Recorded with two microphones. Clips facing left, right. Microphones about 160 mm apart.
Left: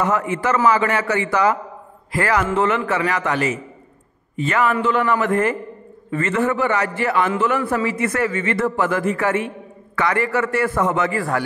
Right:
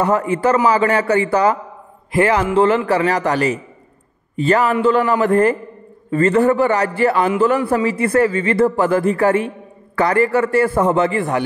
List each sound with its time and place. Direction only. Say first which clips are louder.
0.0 s a man's voice: right 4 dB; 35° right (ahead or behind)